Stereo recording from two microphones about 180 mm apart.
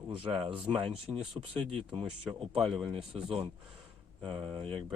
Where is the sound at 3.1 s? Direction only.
30° right (ahead or behind).